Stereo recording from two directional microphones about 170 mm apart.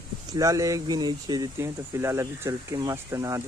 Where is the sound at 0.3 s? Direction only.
20° right (ahead or behind).